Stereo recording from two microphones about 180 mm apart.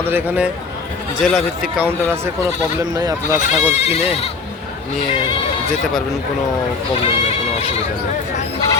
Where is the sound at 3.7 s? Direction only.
35° left (ahead or behind).